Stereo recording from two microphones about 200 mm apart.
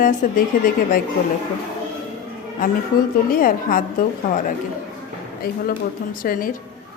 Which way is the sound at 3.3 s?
45° left (ahead or behind).